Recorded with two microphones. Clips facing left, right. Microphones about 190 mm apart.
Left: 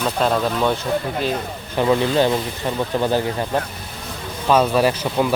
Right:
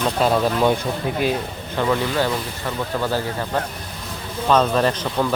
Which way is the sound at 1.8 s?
20° left (ahead or behind).